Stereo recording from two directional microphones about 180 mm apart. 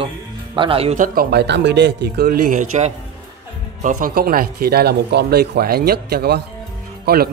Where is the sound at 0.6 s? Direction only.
30° right (ahead or behind).